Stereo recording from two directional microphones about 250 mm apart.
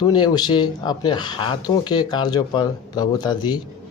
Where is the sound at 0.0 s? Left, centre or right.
Centre.